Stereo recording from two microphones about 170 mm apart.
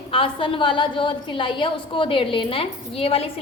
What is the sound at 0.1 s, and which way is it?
A woman's voice, 30° left (ahead or behind).